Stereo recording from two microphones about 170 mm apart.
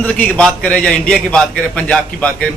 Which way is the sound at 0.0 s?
5° left (ahead or behind).